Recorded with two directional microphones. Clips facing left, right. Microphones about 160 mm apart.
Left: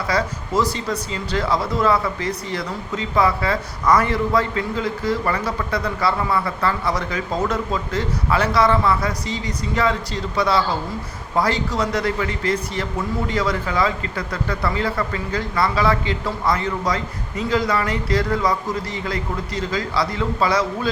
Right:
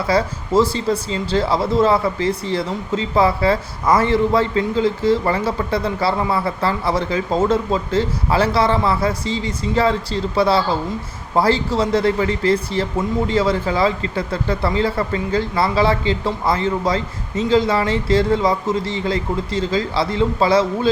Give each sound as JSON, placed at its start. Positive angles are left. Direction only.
{"t": 0.1, "sound": "speech", "side_deg": -30}